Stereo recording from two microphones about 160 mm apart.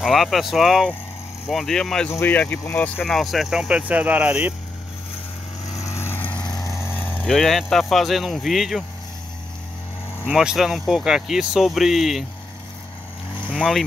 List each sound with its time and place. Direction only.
0.0 s speech: centre (ahead or behind)
2.0 s speech: 15° left (ahead or behind); by 4.6 s 10° right (ahead or behind)
5.8 s vehicle: 15° left (ahead or behind)
6.4 s vehicle: 25° left (ahead or behind)
6.8 s speech: 10° left (ahead or behind)
10.2 s speech: 5° right (ahead or behind)
13.5 s speech: centre (ahead or behind)